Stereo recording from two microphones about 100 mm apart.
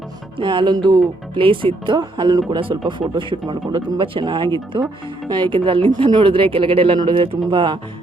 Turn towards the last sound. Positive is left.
turn(degrees=-60)  # may be behind; listen again after turning